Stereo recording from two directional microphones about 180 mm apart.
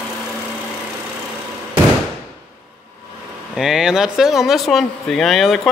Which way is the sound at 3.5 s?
5° right (ahead or behind).